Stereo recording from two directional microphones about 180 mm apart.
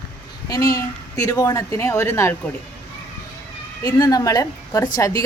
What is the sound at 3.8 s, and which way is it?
A woman's voice, 20° left (ahead or behind).